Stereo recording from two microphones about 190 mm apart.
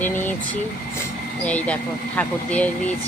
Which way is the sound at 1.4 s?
5° left (ahead or behind).